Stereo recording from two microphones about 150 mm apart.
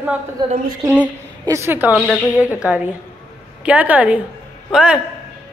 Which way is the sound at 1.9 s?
5° left (ahead or behind).